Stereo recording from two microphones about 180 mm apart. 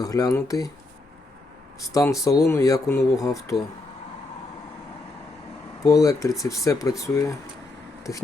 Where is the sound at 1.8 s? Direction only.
20° left (ahead or behind).